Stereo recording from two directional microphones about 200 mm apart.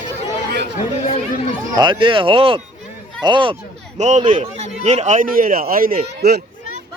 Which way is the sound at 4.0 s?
35° right (ahead or behind).